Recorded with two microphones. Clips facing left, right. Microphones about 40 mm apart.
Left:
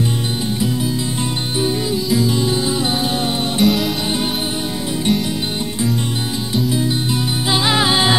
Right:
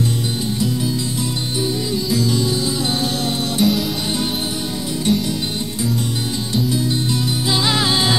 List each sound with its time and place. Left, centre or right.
2.1 s music: left
3.6 s music: centre
7.4 s music: centre